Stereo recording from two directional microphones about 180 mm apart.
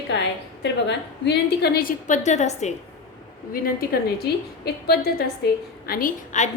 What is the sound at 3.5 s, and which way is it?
A woman's voice, 55° left (ahead or behind).